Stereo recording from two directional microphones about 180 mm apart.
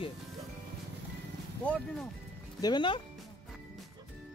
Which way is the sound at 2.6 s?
25° left (ahead or behind).